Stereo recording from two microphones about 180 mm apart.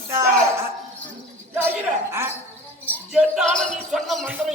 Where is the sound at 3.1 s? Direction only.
Centre (ahead or behind).